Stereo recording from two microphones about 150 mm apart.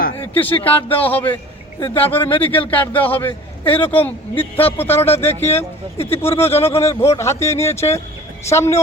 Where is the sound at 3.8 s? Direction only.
35° left (ahead or behind).